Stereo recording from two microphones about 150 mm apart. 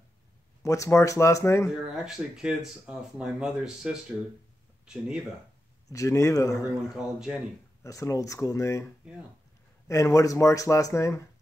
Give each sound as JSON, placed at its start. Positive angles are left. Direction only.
{"t": 0.6, "sound": "speech", "side_deg": 20}
{"t": 2.0, "sound": "speech", "side_deg": -5}
{"t": 5.9, "sound": "speech", "side_deg": 20}
{"t": 6.9, "sound": "speech", "side_deg": 0}
{"t": 7.8, "sound": "speech", "side_deg": 20}